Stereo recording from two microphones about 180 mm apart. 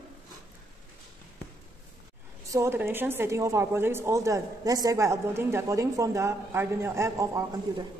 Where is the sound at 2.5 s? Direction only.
15° right (ahead or behind).